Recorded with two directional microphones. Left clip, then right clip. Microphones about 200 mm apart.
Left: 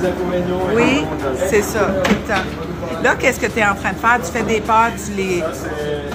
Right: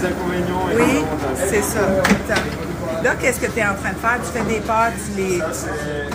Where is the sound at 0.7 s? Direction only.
10° left (ahead or behind).